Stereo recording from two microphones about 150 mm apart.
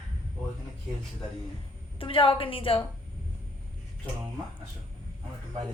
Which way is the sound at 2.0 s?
35° left (ahead or behind).